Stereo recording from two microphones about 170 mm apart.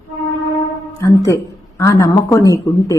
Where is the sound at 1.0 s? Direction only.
20° left (ahead or behind).